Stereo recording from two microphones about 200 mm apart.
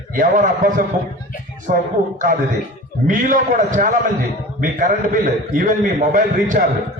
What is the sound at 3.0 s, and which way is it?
A man's voice, 40° right (ahead or behind).